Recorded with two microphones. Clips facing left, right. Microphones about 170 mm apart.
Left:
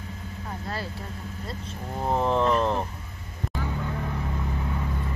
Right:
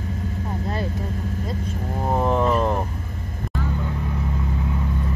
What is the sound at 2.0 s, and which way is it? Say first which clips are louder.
Whale vocalization: right 2 dB; 10° right (ahead or behind).